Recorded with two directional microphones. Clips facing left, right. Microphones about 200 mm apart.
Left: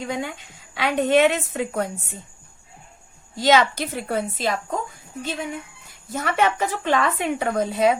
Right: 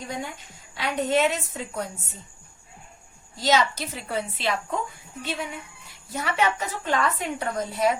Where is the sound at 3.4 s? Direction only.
55° left (ahead or behind).